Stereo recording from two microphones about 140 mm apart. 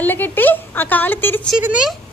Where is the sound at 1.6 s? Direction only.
10° right (ahead or behind).